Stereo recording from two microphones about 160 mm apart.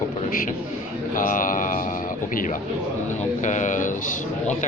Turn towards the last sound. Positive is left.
turn(degrees=50)  # may be behind; listen again after turning